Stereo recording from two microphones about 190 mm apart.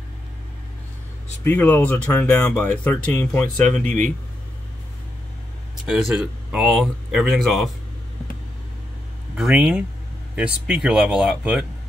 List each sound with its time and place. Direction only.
1.4 s speech: 10° left (ahead or behind)
5.9 s speech: 5° right (ahead or behind)
9.4 s speech: 5° right (ahead or behind)